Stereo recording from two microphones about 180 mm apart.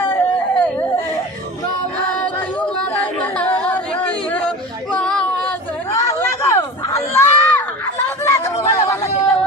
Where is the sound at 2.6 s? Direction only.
10° left (ahead or behind).